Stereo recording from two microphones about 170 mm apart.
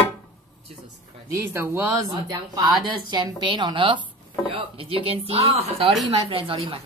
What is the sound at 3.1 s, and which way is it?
Speech, 25° right (ahead or behind).